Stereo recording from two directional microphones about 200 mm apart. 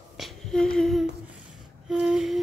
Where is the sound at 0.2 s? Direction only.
5° left (ahead or behind).